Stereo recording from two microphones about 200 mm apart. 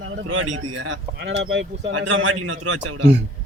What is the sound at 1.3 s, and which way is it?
Speech, 65° right (ahead or behind).